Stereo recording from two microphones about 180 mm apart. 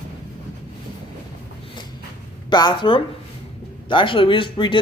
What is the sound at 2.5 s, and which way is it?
Speech, 25° left (ahead or behind).